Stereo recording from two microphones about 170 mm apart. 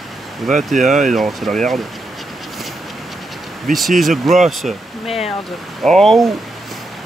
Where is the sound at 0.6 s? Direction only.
Centre (ahead or behind).